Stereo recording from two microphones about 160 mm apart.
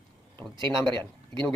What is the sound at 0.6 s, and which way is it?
Speech, 30° right (ahead or behind).